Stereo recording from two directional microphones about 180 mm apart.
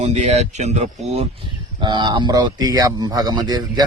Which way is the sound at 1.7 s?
25° right (ahead or behind).